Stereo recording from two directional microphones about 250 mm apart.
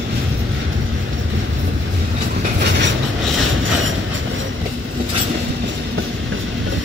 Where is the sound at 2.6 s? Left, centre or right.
Right.